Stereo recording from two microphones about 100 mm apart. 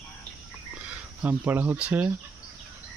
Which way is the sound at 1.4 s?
15° right (ahead or behind).